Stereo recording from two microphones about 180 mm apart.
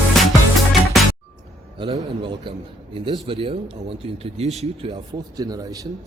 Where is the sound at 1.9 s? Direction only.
25° right (ahead or behind).